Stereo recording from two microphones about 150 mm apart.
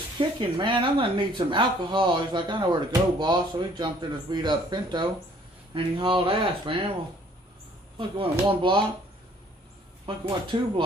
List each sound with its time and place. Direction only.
0.2 s speech: 35° right (ahead or behind)
7.9 s speech: 35° right (ahead or behind)
10.2 s speech: 30° right (ahead or behind)